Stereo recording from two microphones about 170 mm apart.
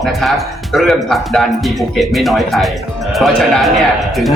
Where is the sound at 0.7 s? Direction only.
Centre (ahead or behind).